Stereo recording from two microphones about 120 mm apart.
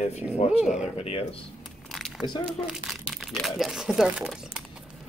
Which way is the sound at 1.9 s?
5° left (ahead or behind).